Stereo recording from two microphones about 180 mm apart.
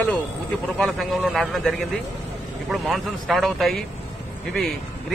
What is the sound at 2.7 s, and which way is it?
Speech, centre (ahead or behind).